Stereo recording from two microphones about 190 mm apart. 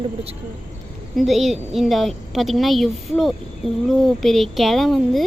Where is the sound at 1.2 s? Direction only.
Centre (ahead or behind).